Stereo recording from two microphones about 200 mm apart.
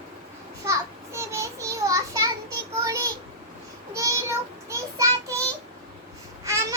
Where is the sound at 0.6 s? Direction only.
15° right (ahead or behind).